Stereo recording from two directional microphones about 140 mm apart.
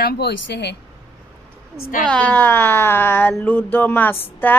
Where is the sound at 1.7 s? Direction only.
90° left.